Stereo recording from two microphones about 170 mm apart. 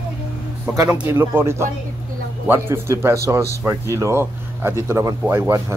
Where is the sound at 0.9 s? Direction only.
15° right (ahead or behind).